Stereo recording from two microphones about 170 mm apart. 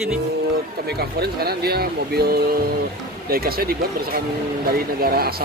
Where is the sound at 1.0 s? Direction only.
65° right (ahead or behind).